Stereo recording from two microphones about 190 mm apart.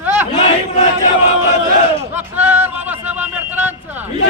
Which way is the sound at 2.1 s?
10° right (ahead or behind).